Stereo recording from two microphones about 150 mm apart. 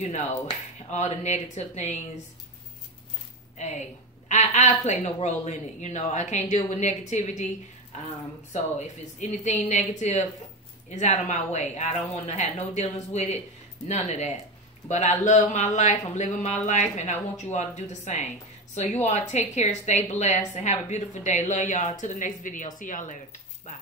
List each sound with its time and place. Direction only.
0.8 s a woman's voice: 50° left (ahead or behind)
3.5 s a woman's voice: 50° left (ahead or behind)
8.7 s a woman's voice: 50° left (ahead or behind)